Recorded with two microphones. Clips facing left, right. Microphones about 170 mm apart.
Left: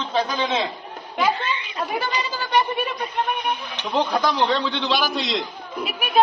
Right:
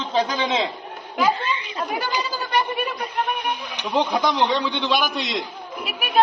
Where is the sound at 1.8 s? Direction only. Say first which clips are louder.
Even; centre (ahead or behind); by 4.7 s 15° right (ahead or behind).